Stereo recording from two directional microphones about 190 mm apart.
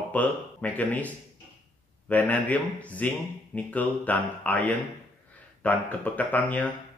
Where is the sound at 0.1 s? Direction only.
10° left (ahead or behind).